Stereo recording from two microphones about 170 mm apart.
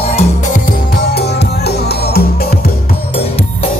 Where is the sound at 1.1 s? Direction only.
75° left (ahead or behind).